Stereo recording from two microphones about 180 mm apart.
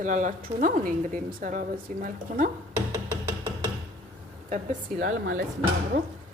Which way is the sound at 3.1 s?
25° right (ahead or behind).